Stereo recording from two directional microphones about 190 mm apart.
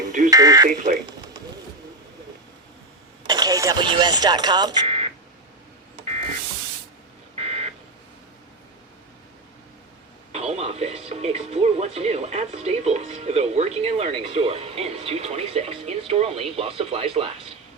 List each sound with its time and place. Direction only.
0.3 s alarm: 20° right (ahead or behind)
0.7 s speech: 40° right (ahead or behind)
3.2 s speech: 20° right (ahead or behind)
4.9 s a sound: 35° right (ahead or behind)
7.3 s a sound: 35° right (ahead or behind)
10.3 s speech: 35° right (ahead or behind)